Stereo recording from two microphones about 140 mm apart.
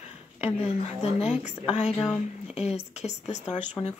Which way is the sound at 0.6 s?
50° left (ahead or behind).